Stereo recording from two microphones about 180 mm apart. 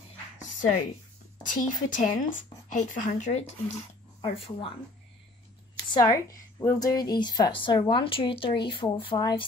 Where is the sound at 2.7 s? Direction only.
40° left (ahead or behind).